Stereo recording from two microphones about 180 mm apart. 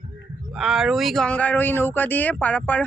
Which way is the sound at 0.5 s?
Centre (ahead or behind).